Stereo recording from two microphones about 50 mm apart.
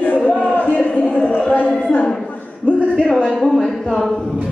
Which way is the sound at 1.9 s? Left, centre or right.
Centre.